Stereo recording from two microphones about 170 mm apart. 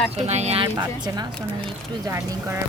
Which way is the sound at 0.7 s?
25° right (ahead or behind).